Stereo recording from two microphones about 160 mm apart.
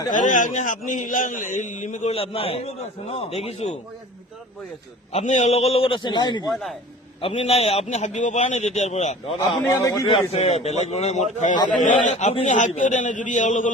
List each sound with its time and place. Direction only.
0.1 s a man's voice: 50° left (ahead or behind)
5.1 s a man's voice: 45° left (ahead or behind); by 6.5 s 30° left (ahead or behind)
6.5 s a man's voice: centre (ahead or behind)
7.2 s a man's voice: 40° left (ahead or behind)
9.4 s a man's voice: 20° left (ahead or behind)
10.1 s a man's voice: 40° left (ahead or behind)